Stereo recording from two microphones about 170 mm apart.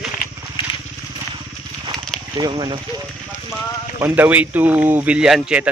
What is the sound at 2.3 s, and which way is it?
Speech, 25° right (ahead or behind).